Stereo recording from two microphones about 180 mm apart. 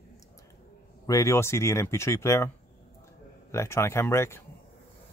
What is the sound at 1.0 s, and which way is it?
Speech, 20° left (ahead or behind).